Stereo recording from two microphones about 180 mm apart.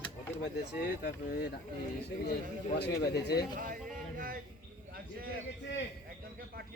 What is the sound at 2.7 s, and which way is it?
Speech, 70° left (ahead or behind).